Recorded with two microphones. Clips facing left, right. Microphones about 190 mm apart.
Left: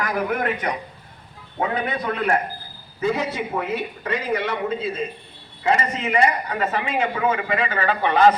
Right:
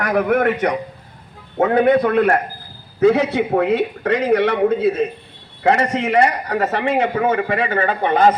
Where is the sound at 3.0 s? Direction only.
70° right (ahead or behind).